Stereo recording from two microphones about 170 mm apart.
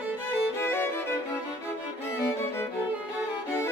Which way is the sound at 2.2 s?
15° left (ahead or behind).